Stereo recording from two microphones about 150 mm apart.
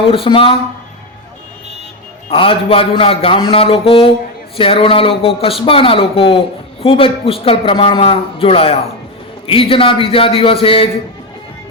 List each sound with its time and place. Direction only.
0.1 s a man's voice: 40° left (ahead or behind)
2.3 s a man's voice: 35° left (ahead or behind)